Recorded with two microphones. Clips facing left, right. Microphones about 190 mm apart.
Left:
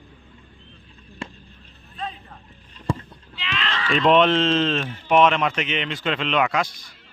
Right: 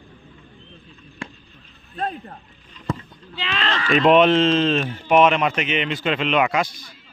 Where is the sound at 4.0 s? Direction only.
5° right (ahead or behind).